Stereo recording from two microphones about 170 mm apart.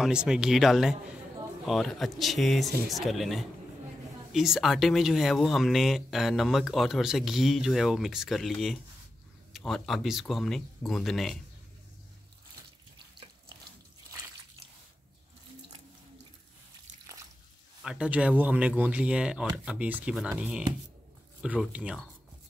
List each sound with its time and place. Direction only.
0.0 s speech: 5° right (ahead or behind)
17.0 s water: 20° right (ahead or behind)
17.8 s speech: 5° right (ahead or behind)